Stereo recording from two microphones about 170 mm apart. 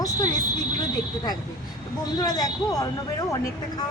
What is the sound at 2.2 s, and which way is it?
Speech, 20° left (ahead or behind).